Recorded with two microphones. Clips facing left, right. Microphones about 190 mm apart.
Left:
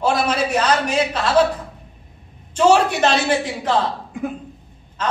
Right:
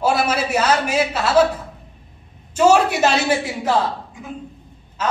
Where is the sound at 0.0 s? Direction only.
5° right (ahead or behind).